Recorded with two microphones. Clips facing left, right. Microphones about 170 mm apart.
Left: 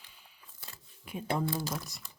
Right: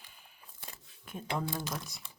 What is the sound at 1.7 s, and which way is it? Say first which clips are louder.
Speech: left 2 dB; centre (ahead or behind).